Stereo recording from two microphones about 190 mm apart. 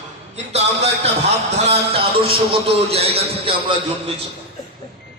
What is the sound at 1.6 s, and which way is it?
A man's voice, 30° right (ahead or behind).